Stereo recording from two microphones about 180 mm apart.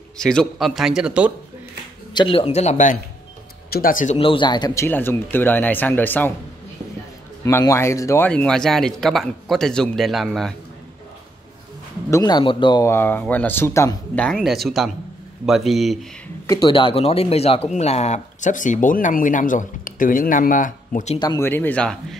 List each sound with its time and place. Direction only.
0.2 s speech: 5° left (ahead or behind)
2.1 s speech: 30° left (ahead or behind); by 4.2 s 45° left (ahead or behind)
4.2 s speech: 30° left (ahead or behind); by 6.3 s 10° left (ahead or behind)
7.4 s speech: 15° left (ahead or behind)
8.3 s speech: 5° left (ahead or behind)
12.1 s speech: 20° left (ahead or behind)
12.9 s speech: 10° left (ahead or behind)
16.4 s speech: 30° left (ahead or behind); by 21.2 s 45° left (ahead or behind)
21.2 s speech: 25° left (ahead or behind)
21.5 s speech: 10° left (ahead or behind)